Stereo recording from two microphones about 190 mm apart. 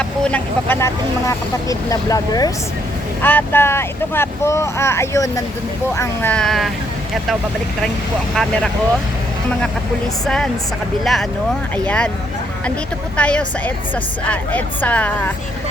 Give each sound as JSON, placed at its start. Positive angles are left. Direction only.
{"t": 0.0, "sound": "speech", "side_deg": 5}
{"t": 10.2, "sound": "speech", "side_deg": 5}
{"t": 13.1, "sound": "speech", "side_deg": 5}